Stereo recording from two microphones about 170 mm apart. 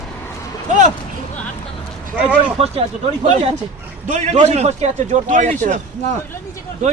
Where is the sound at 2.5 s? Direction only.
35° right (ahead or behind).